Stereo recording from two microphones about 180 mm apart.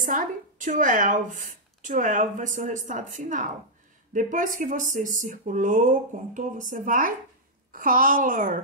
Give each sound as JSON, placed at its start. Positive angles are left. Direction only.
{"t": 0.0, "sound": "speech", "side_deg": -50}